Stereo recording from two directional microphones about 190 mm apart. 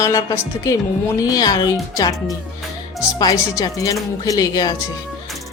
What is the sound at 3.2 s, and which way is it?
Speech, 20° left (ahead or behind).